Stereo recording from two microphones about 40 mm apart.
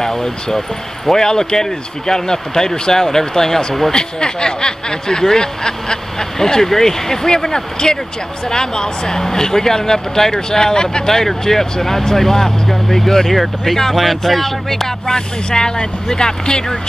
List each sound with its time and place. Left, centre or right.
0.0 s speech: centre
3.9 s speech: centre
15.1 s speech: centre